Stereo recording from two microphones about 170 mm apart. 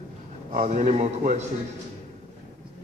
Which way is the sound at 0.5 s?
50° right (ahead or behind).